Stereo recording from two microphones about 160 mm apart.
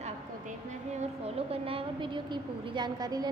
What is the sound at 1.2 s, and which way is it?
A woman's voice, 40° right (ahead or behind).